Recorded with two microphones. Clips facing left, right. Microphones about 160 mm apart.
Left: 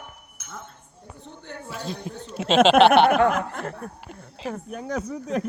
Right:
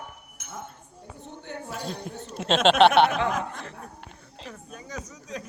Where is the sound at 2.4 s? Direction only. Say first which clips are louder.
Left 4 dB; centre (ahead or behind).